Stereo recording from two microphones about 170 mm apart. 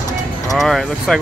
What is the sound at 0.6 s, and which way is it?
Speech, centre (ahead or behind).